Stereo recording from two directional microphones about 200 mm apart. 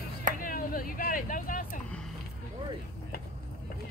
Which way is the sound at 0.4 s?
45° left (ahead or behind).